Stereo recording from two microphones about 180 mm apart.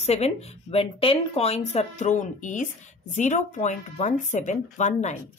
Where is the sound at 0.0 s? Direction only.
35° left (ahead or behind).